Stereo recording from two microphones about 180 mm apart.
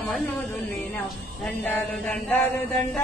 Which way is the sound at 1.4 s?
5° left (ahead or behind).